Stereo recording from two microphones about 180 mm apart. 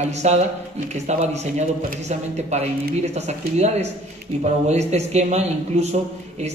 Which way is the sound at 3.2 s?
35° right (ahead or behind).